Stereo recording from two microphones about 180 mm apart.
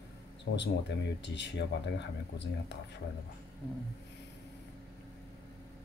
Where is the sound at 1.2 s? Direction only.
75° left (ahead or behind).